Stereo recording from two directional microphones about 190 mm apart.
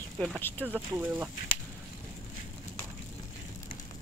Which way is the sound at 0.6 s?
10° right (ahead or behind).